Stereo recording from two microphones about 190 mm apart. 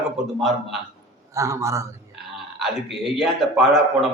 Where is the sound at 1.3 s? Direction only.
15° right (ahead or behind).